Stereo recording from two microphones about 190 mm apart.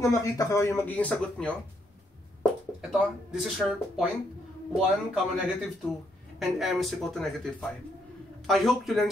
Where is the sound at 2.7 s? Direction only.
5° right (ahead or behind).